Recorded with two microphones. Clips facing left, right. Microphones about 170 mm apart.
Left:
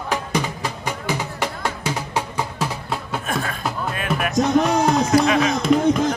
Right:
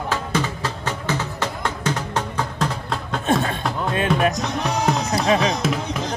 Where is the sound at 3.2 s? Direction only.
25° right (ahead or behind).